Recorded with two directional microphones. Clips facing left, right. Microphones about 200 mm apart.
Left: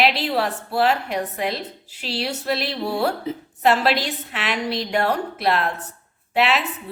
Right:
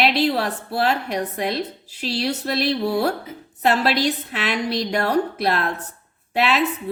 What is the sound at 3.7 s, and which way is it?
A woman's voice, 40° right (ahead or behind).